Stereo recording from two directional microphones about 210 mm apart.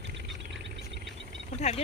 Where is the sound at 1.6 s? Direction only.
30° left (ahead or behind).